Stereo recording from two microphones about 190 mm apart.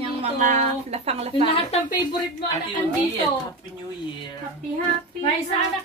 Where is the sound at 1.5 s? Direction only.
25° left (ahead or behind).